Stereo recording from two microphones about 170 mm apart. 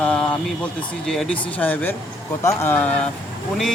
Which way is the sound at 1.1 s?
5° left (ahead or behind).